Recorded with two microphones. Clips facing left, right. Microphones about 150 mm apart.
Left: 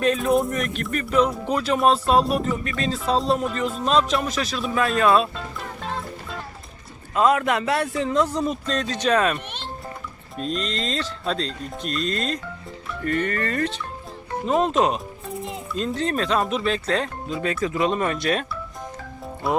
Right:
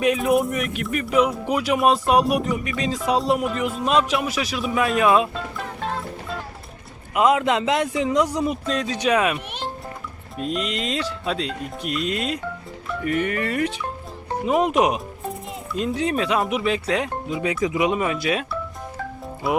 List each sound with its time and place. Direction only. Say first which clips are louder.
0.3 s music: right 1 dB; 10° right (ahead or behind)
5.5 s music: right 2 dB; centre (ahead or behind)
7.1 s music: right 1 dB; 20° right (ahead or behind)